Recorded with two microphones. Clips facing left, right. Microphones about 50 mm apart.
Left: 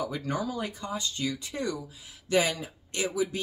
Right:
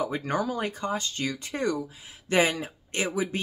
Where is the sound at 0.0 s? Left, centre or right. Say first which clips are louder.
Right 3 dB; right.